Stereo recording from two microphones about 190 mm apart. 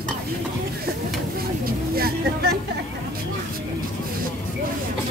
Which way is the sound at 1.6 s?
55° right (ahead or behind).